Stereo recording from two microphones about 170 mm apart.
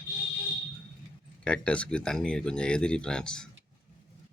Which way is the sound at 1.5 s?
5° left (ahead or behind).